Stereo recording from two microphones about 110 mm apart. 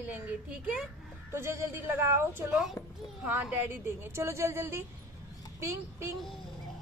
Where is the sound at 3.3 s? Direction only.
15° right (ahead or behind).